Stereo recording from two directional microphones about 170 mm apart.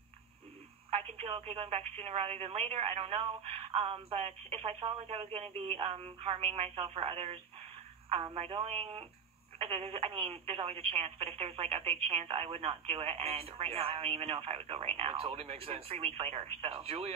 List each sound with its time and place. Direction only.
0.8 s speech: 35° right (ahead or behind)